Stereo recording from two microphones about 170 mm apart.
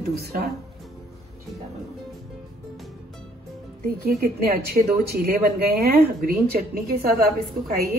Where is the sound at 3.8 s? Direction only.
60° right (ahead or behind).